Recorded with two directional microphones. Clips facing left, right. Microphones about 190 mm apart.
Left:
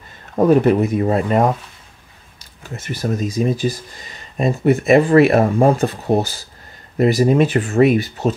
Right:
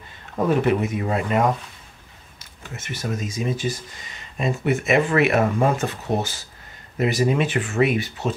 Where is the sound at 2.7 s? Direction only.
35° left (ahead or behind).